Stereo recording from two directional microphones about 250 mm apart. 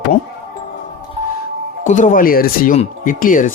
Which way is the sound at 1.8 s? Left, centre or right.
Left.